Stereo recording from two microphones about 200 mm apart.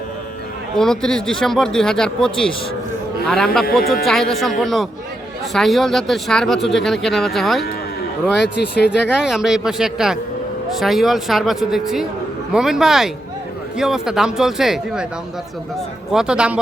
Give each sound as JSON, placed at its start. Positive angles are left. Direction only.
{"t": 0.8, "sound": "speech", "side_deg": 5}
{"t": 8.5, "sound": "speech", "side_deg": 55}
{"t": 8.9, "sound": "speech", "side_deg": -5}
{"t": 16.0, "sound": "speech", "side_deg": -5}